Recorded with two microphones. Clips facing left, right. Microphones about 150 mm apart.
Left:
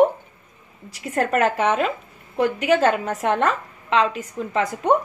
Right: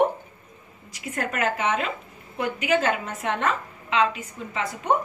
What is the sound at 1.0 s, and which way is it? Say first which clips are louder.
A woman's voice: left 7 dB; 40° left (ahead or behind).